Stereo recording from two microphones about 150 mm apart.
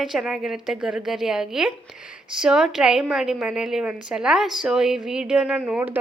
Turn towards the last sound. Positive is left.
turn(degrees=-10)  # may be behind; listen again after turning